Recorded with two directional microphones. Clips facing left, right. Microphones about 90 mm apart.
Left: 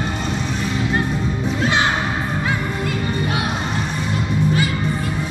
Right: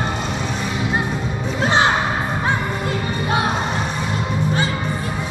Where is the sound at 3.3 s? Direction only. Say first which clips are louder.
Right 3 dB; 30° right (ahead or behind).